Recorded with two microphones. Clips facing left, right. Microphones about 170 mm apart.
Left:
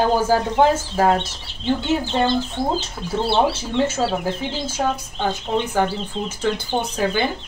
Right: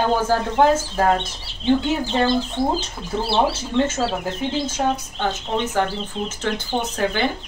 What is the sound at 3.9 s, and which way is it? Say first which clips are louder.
A woman's voice: left 2 dB; centre (ahead or behind).